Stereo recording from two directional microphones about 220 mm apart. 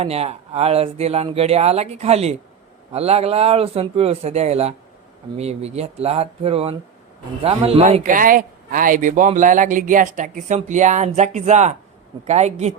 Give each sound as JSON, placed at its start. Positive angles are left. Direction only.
{"t": 0.0, "sound": "a man's voice", "side_deg": -30}